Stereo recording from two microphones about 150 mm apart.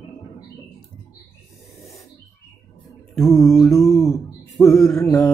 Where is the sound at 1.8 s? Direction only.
Centre (ahead or behind).